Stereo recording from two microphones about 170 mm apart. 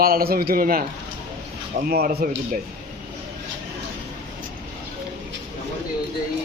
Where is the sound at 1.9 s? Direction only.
55° right (ahead or behind).